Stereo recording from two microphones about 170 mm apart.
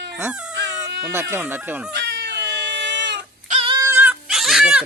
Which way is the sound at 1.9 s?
90° right.